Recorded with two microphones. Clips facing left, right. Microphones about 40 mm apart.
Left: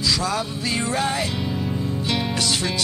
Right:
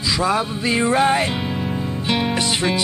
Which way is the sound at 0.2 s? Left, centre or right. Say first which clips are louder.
Right 5 dB; right.